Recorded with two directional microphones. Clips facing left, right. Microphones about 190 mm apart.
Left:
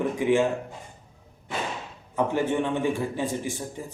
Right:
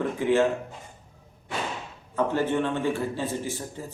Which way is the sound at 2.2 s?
15° left (ahead or behind).